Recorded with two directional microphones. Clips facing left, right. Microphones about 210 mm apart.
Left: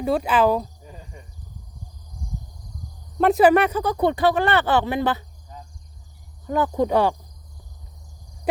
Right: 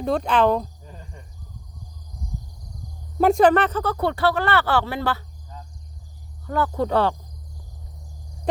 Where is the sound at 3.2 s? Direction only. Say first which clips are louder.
Left 1 dB; 5° left (ahead or behind).